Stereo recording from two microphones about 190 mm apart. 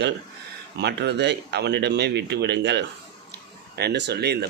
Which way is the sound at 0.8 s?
65° right (ahead or behind).